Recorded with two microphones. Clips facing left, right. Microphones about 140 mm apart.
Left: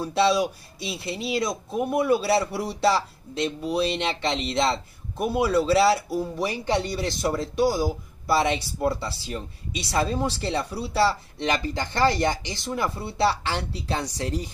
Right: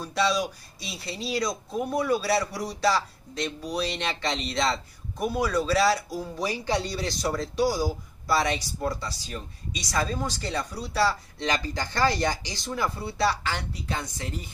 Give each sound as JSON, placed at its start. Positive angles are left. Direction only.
{"t": 0.0, "sound": "speech", "side_deg": 25}
{"t": 1.7, "sound": "a man's voice", "side_deg": 5}
{"t": 2.0, "sound": "speech", "side_deg": 25}